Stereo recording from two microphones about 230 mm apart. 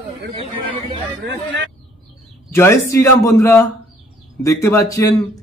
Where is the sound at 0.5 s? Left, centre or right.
Right.